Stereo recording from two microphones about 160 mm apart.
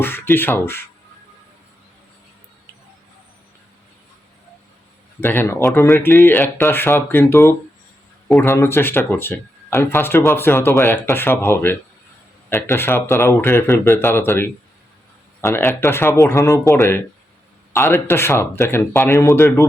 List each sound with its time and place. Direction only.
0.0 s speech: 15° left (ahead or behind)
5.2 s speech: 10° left (ahead or behind)